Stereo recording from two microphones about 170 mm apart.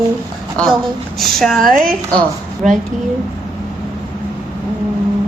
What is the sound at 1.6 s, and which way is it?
Speech, 55° right (ahead or behind).